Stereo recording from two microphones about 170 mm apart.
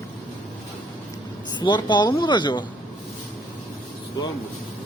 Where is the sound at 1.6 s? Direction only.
25° left (ahead or behind).